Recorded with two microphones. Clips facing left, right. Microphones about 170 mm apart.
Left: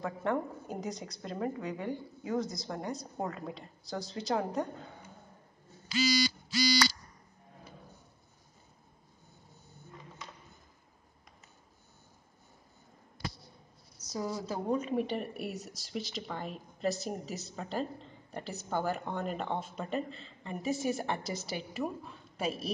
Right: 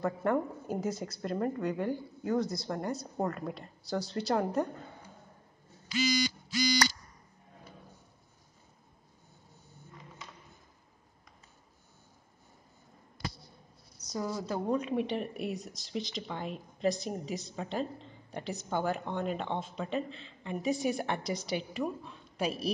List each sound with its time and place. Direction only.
0.0 s a woman's voice: 5° right (ahead or behind)
5.9 s a sound: 30° left (ahead or behind)
13.9 s a woman's voice: 5° left (ahead or behind)